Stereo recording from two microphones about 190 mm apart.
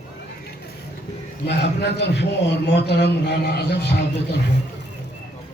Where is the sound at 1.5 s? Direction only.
65° left (ahead or behind).